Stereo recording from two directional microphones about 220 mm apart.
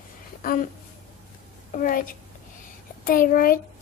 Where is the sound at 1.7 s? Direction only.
40° left (ahead or behind).